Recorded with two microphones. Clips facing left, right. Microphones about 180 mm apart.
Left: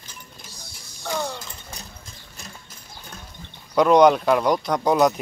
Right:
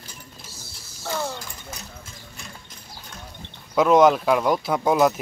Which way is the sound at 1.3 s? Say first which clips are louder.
Right 1 dB; 30° left (ahead or behind).